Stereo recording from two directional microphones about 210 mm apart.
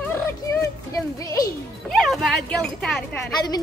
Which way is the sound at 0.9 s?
15° left (ahead or behind).